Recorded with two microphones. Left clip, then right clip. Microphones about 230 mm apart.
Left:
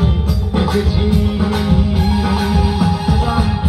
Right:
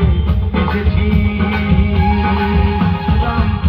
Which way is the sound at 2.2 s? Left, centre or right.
Left.